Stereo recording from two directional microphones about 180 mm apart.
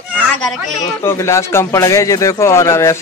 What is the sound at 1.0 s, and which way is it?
Speech, 15° left (ahead or behind).